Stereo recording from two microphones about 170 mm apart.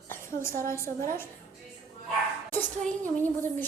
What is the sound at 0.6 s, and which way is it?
Speech, 15° left (ahead or behind).